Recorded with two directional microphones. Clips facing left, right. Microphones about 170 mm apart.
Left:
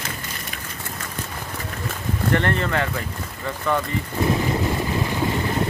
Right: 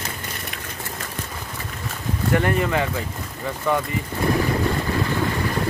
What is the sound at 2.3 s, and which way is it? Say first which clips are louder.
Speech: right 2 dB; 10° right (ahead or behind).